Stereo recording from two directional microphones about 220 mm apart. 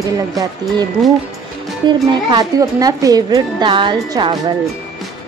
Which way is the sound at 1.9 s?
20° right (ahead or behind).